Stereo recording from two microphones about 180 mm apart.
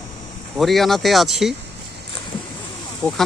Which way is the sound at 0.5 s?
Centre (ahead or behind).